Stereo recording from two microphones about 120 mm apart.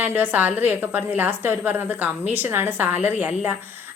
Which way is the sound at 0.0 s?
15° right (ahead or behind).